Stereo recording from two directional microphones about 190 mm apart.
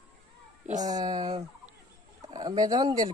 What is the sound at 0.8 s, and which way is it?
Speech, 20° right (ahead or behind).